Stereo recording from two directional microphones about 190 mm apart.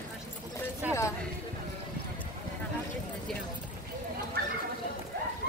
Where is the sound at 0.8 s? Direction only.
10° right (ahead or behind).